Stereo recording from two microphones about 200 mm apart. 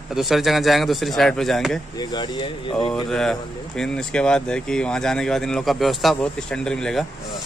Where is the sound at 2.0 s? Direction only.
20° left (ahead or behind).